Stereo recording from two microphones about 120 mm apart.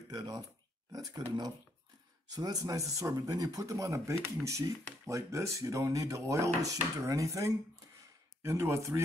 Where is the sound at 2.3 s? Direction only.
30° right (ahead or behind).